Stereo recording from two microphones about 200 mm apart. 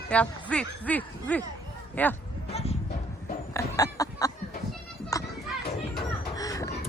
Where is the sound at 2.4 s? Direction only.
30° left (ahead or behind).